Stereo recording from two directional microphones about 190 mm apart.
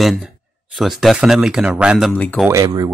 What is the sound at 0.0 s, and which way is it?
Speech, centre (ahead or behind).